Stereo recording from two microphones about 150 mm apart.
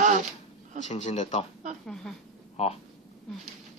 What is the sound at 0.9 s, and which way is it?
Speech, 50° left (ahead or behind).